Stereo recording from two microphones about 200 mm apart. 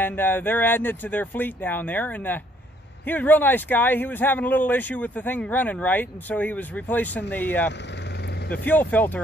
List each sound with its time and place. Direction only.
0.0 s speech: 10° left (ahead or behind)